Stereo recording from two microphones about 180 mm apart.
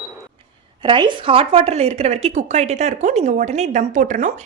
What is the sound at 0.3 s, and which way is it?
A woman's voice, 25° right (ahead or behind).